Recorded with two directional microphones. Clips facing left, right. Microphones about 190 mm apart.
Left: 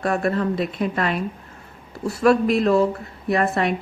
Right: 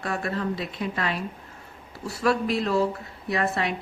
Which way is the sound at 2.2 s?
55° left (ahead or behind).